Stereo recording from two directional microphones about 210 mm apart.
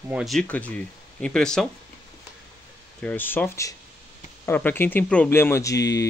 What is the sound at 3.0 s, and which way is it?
Speech, 10° left (ahead or behind).